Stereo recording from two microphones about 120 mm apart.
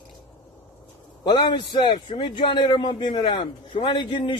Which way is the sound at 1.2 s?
40° left (ahead or behind).